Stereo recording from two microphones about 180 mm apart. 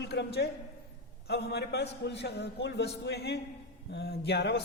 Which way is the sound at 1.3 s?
65° left (ahead or behind).